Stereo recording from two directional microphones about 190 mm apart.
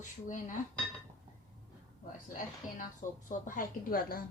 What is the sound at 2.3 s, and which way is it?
A woman's voice, 40° left (ahead or behind).